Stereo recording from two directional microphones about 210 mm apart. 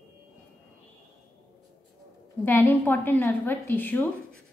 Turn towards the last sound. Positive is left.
turn(degrees=10)  # may be behind; listen again after turning